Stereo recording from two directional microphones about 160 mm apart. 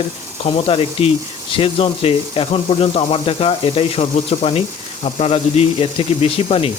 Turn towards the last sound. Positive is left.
turn(degrees=35)  # may be behind; listen again after turning